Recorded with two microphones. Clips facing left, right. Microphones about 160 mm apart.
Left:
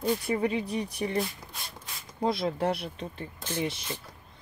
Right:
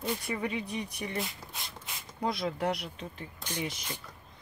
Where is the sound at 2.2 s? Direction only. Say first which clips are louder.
Left 4 dB; 30° left (ahead or behind).